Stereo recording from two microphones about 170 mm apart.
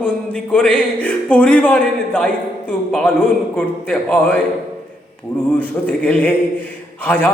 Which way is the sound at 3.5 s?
5° left (ahead or behind).